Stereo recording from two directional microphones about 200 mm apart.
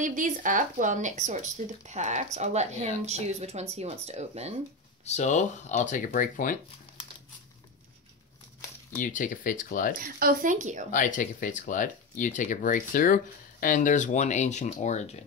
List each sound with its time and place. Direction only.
0.0 s speech: 40° right (ahead or behind)
5.0 s speech: 35° left (ahead or behind)
9.0 s speech: 40° left (ahead or behind)
10.1 s speech: 45° right (ahead or behind)
10.9 s speech: 40° left (ahead or behind)